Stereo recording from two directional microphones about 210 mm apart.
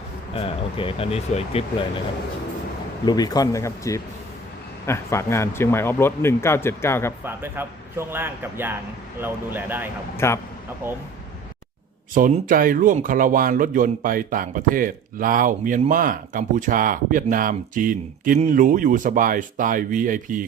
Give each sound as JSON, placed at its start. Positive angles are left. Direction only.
{"t": 0.3, "sound": "speech", "side_deg": 25}
{"t": 3.1, "sound": "speech", "side_deg": 20}
{"t": 7.3, "sound": "a man's voice", "side_deg": -10}
{"t": 10.2, "sound": "speech", "side_deg": 10}
{"t": 10.8, "sound": "a man's voice", "side_deg": -10}
{"t": 12.1, "sound": "speech", "side_deg": -40}